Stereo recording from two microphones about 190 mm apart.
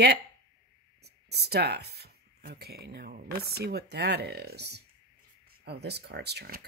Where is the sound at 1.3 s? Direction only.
60° right (ahead or behind).